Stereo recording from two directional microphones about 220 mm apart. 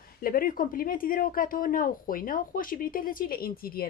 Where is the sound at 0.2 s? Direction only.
40° left (ahead or behind).